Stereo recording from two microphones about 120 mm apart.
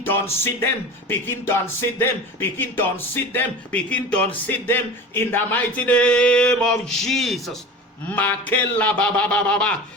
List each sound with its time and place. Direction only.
0.0 s speech: 20° left (ahead or behind); by 7.6 s centre (ahead or behind)
8.1 s speech: 15° left (ahead or behind)